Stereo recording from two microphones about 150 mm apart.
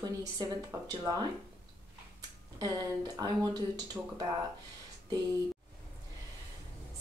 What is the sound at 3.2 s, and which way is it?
Speech, 25° right (ahead or behind).